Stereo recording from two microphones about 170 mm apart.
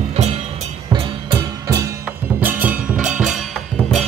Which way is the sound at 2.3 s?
10° right (ahead or behind).